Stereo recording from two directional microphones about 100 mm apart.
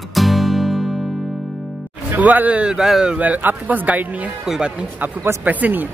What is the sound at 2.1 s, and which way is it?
A man's voice, 15° right (ahead or behind).